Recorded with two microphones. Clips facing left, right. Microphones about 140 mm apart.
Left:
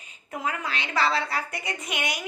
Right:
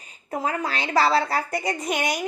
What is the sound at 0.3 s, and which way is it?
A woman's voice, 35° right (ahead or behind).